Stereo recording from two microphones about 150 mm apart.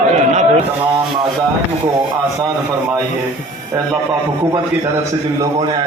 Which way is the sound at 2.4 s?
30° right (ahead or behind).